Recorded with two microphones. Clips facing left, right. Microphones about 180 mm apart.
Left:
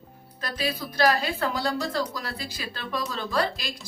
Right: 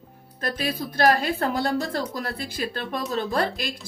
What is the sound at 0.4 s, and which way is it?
Speech, 50° right (ahead or behind).